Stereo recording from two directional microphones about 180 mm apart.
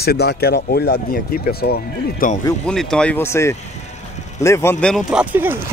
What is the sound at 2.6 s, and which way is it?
Speech, 5° left (ahead or behind).